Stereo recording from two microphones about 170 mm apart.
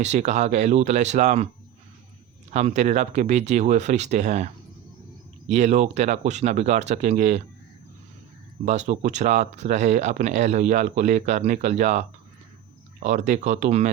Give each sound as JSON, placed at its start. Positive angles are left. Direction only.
{"t": 0.0, "sound": "speech", "side_deg": -45}
{"t": 2.5, "sound": "speech", "side_deg": -40}
{"t": 5.5, "sound": "speech", "side_deg": -40}
{"t": 8.6, "sound": "speech", "side_deg": -45}